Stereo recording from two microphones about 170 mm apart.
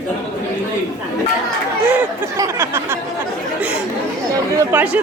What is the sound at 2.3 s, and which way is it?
Speech, 15° right (ahead or behind).